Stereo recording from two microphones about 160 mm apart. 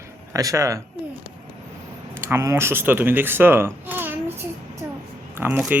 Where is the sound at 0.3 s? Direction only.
20° right (ahead or behind).